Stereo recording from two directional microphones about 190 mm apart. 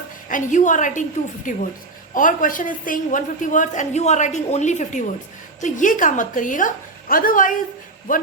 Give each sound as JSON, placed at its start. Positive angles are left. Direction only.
{"t": 0.3, "sound": "a woman's voice", "side_deg": 45}